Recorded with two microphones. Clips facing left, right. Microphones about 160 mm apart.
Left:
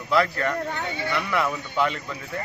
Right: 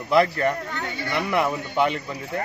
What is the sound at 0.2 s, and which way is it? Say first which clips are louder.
Speech: right 3 dB; 25° right (ahead or behind).